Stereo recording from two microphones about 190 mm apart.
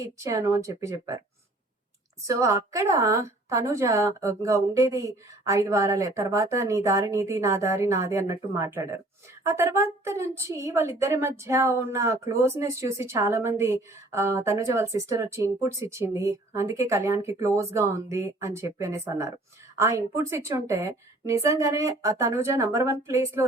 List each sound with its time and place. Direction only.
0.0 s a woman's voice: 15° right (ahead or behind)
2.2 s a woman's voice: 15° right (ahead or behind)